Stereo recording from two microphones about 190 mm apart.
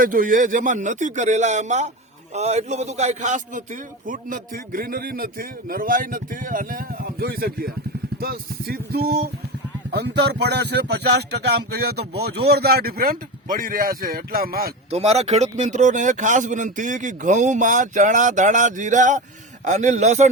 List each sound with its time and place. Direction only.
0.0 s a man's voice: 45° right (ahead or behind)
14.8 s a man's voice: 35° right (ahead or behind)